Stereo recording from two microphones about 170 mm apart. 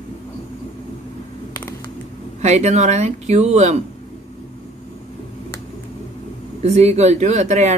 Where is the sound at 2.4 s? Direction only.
40° right (ahead or behind).